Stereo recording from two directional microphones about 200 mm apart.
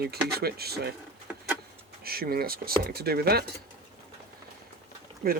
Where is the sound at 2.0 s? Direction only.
50° right (ahead or behind).